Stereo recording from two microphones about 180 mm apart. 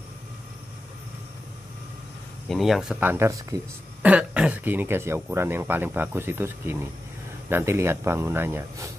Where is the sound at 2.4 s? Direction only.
Centre (ahead or behind).